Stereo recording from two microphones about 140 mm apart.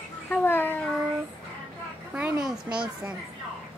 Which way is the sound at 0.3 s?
15° left (ahead or behind).